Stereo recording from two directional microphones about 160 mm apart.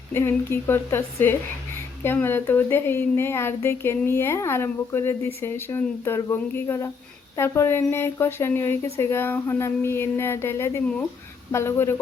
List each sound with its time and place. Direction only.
0.1 s a woman's voice: 15° left (ahead or behind)